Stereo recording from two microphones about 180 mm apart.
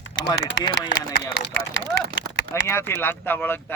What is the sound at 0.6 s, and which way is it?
Speech, 90° left.